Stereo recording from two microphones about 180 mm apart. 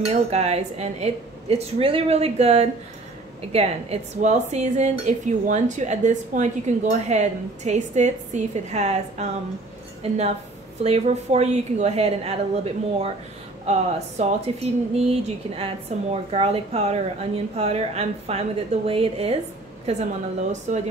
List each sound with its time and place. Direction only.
0.0 s speech: 35° right (ahead or behind)